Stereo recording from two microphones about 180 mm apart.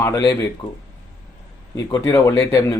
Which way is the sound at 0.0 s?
15° left (ahead or behind).